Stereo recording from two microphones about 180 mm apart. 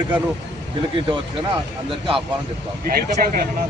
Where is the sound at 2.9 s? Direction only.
55° right (ahead or behind).